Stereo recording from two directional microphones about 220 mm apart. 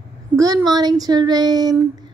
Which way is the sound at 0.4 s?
15° right (ahead or behind).